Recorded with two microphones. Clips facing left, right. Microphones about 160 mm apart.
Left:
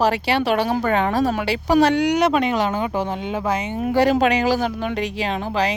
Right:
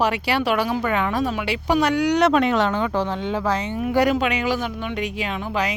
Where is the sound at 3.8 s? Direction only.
30° left (ahead or behind).